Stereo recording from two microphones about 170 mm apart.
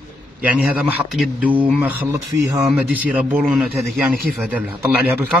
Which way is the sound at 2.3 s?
20° right (ahead or behind).